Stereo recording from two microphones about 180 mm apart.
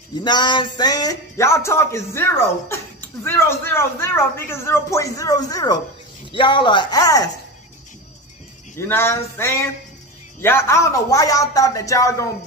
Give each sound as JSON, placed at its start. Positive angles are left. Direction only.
{"t": 0.2, "sound": "speech", "side_deg": 25}
{"t": 3.3, "sound": "speech", "side_deg": 15}
{"t": 8.7, "sound": "speech", "side_deg": 15}